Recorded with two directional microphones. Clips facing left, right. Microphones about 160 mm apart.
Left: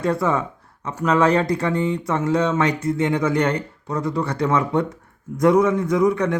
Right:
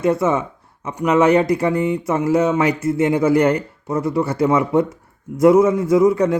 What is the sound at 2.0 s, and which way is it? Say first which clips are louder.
Speech: right 3 dB; 5° right (ahead or behind).